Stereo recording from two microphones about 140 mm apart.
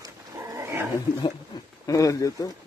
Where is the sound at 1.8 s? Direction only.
25° left (ahead or behind).